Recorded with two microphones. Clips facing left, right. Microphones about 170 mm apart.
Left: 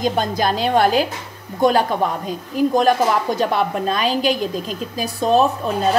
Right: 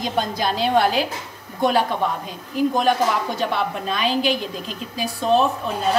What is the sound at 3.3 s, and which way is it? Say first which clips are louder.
A woman's voice: left 4 dB; 45° left (ahead or behind).